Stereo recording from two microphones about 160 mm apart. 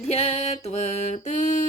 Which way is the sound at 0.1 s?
40° left (ahead or behind).